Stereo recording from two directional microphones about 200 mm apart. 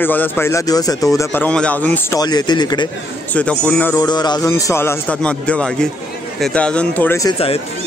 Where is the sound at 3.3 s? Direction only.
5° left (ahead or behind).